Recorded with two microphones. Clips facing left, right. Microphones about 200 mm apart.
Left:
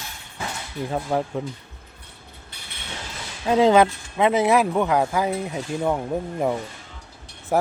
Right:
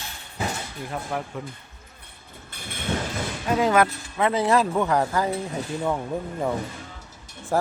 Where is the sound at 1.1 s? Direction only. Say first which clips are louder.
Left 7 dB; 25° left (ahead or behind).